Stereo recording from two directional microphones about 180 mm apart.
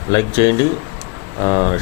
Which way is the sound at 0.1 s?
20° left (ahead or behind).